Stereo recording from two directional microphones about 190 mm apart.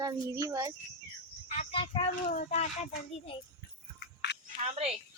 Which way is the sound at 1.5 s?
30° left (ahead or behind).